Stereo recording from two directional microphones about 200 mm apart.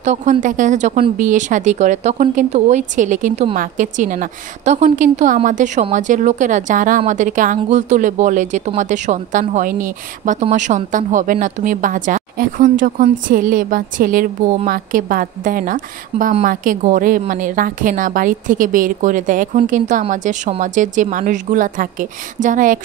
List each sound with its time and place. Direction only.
0.0 s a woman's voice: 35° right (ahead or behind)